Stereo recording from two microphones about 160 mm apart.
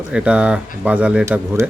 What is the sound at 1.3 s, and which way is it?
Speech, 15° right (ahead or behind).